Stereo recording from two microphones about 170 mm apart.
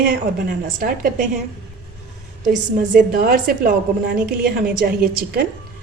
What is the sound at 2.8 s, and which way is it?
A woman's voice, 55° right (ahead or behind).